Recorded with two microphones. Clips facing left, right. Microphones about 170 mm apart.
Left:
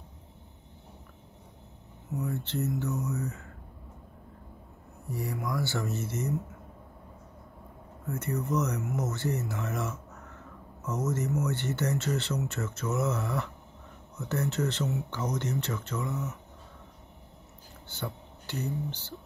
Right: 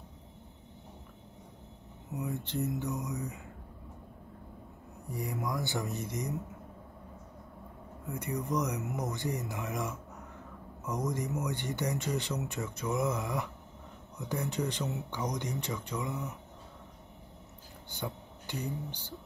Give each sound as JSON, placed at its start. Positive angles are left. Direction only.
{"t": 2.1, "sound": "speech", "side_deg": -15}
{"t": 5.1, "sound": "speech", "side_deg": -20}
{"t": 8.1, "sound": "speech", "side_deg": -15}
{"t": 17.8, "sound": "speech", "side_deg": -15}